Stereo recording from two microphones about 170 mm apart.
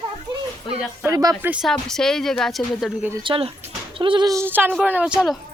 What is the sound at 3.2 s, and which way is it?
Speech, 30° right (ahead or behind).